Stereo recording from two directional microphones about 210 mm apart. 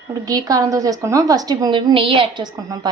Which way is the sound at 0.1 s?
20° right (ahead or behind).